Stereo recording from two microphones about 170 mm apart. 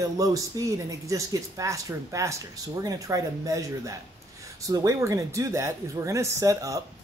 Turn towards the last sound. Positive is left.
turn(degrees=-20)  # may be behind; listen again after turning